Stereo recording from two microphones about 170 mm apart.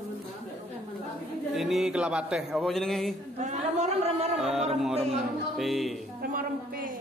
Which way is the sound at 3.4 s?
45° right (ahead or behind).